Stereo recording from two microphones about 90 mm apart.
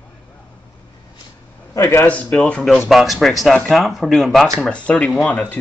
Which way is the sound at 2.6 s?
Centre (ahead or behind).